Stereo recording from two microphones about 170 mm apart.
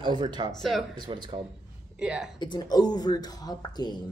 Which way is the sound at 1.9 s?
5° right (ahead or behind).